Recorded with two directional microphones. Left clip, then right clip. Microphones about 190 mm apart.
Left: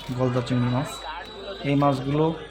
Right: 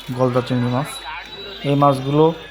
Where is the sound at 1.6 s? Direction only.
25° right (ahead or behind).